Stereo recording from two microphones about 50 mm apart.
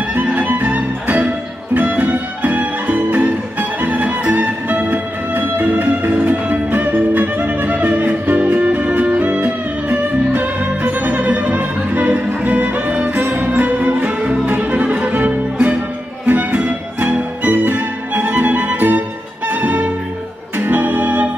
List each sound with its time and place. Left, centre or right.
0.1 s music: right